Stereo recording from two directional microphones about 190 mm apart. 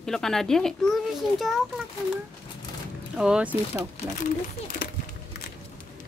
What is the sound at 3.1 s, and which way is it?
Speech, 5° right (ahead or behind).